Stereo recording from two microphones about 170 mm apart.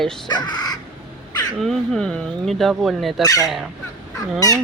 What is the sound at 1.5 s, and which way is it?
Speech, centre (ahead or behind).